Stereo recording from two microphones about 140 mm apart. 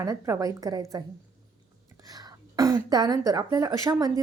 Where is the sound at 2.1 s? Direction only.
25° right (ahead or behind).